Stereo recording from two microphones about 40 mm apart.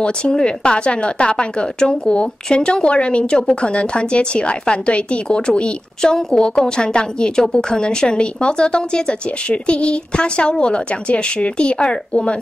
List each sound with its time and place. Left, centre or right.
0.0 s a woman's voice: centre
6.0 s a woman's voice: centre